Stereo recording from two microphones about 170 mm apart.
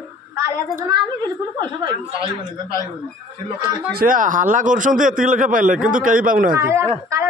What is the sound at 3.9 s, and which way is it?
Speech, 55° right (ahead or behind).